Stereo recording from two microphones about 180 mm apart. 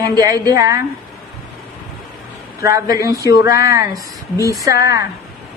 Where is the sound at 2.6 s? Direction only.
15° right (ahead or behind).